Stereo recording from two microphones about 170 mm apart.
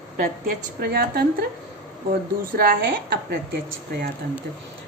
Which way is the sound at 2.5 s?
60° right (ahead or behind).